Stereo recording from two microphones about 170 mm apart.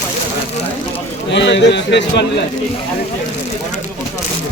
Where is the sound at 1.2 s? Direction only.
90° left.